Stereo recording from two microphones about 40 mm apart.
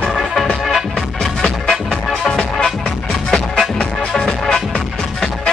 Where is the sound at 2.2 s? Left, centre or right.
Centre.